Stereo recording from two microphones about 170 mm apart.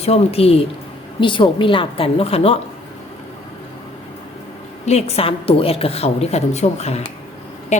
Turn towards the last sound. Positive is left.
turn(degrees=40)  # may be behind; listen again after turning